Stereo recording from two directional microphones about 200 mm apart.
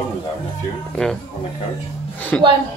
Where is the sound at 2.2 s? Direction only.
10° left (ahead or behind).